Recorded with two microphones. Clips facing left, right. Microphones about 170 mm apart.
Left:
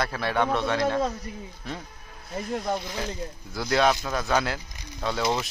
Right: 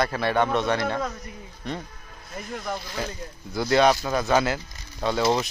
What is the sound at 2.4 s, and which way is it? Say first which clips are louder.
Speech: left 4 dB; 25° left (ahead or behind).